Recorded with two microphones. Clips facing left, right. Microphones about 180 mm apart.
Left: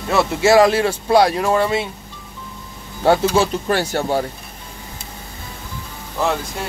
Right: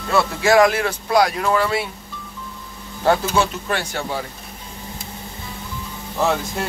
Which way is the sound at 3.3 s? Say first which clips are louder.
Left 3 dB; 35° left (ahead or behind).